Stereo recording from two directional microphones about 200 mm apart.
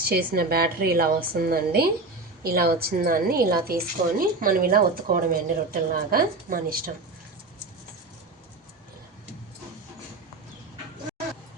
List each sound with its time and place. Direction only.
0.0 s a woman's voice: 50° right (ahead or behind)